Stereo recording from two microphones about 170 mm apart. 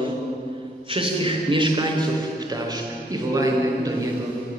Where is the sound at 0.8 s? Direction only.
30° right (ahead or behind).